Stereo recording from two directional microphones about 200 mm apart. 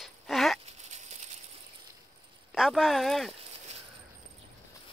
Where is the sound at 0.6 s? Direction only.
35° right (ahead or behind).